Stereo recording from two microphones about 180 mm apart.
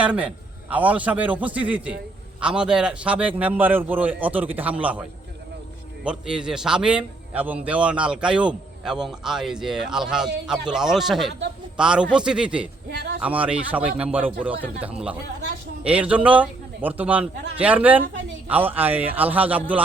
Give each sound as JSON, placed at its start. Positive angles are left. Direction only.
{"t": 0.0, "sound": "a man's voice", "side_deg": -5}
{"t": 12.9, "sound": "a man's voice", "side_deg": -75}
{"t": 13.1, "sound": "a man's voice", "side_deg": -10}